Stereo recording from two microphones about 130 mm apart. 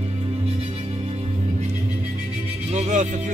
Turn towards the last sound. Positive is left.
turn(degrees=-70)  # may be behind; listen again after turning